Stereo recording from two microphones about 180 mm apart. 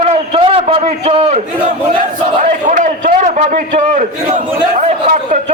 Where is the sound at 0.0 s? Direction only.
30° right (ahead or behind).